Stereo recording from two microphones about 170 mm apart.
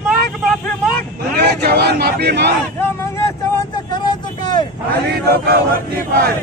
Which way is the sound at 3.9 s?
25° left (ahead or behind).